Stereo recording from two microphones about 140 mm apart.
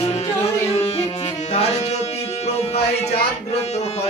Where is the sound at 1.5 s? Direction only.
50° left (ahead or behind).